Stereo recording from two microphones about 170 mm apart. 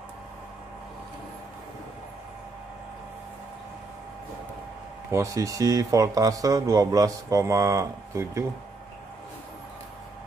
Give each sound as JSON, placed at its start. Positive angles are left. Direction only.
{"t": 5.1, "sound": "speech", "side_deg": -20}